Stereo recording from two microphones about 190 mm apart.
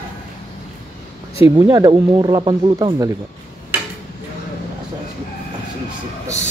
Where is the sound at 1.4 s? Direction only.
20° right (ahead or behind).